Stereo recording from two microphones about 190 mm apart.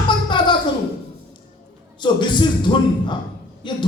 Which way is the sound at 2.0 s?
25° left (ahead or behind).